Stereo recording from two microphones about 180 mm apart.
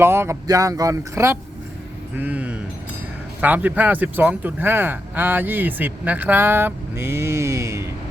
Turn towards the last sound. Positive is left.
turn(degrees=-15)  # may be behind; listen again after turning